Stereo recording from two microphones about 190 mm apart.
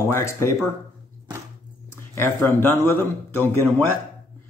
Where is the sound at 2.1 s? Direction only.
15° left (ahead or behind).